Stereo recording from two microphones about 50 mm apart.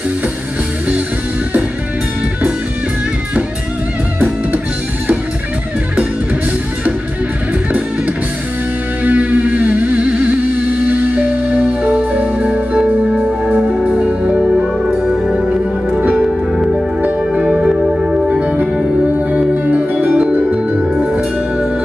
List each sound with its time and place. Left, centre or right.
9.0 s music: right
15.0 s music: centre
16.0 s music: right
17.6 s music: centre
18.3 s music: right